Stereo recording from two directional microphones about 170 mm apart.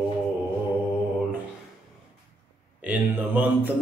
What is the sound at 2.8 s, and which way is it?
Speech, 10° right (ahead or behind).